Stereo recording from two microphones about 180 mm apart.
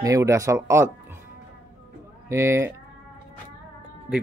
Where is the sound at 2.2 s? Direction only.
15° right (ahead or behind).